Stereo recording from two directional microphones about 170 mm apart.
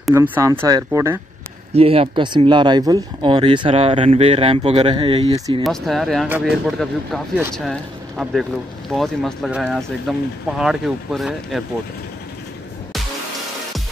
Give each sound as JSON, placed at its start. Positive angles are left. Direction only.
{"t": 0.1, "sound": "speech", "side_deg": -10}
{"t": 1.7, "sound": "speech", "side_deg": -35}
{"t": 5.6, "sound": "speech", "side_deg": 0}
{"t": 8.2, "sound": "speech", "side_deg": 0}